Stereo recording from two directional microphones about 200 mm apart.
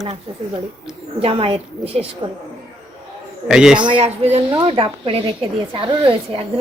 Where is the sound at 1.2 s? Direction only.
30° right (ahead or behind).